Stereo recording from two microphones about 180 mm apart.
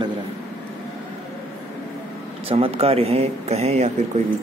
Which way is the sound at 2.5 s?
35° right (ahead or behind).